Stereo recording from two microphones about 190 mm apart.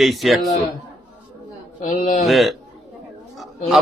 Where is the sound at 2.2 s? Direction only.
Centre (ahead or behind).